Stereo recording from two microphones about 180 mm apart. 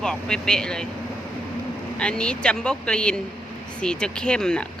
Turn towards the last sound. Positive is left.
turn(degrees=5)  # may be behind; listen again after turning